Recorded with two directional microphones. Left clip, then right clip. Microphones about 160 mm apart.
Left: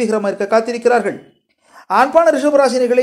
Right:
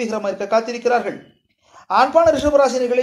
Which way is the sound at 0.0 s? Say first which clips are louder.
Left 5 dB; 30° left (ahead or behind).